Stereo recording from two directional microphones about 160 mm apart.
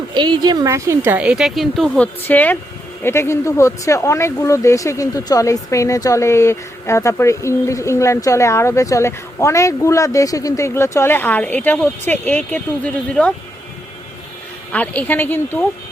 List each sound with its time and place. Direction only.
0.1 s a woman's voice: 30° right (ahead or behind); by 13.3 s 5° left (ahead or behind)
14.7 s speech: 10° left (ahead or behind)